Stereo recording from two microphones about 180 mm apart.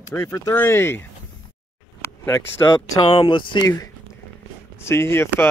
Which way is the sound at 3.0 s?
30° left (ahead or behind).